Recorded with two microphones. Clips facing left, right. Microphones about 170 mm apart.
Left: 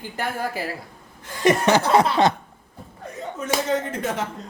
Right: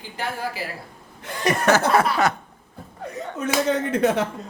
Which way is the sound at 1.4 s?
20° left (ahead or behind).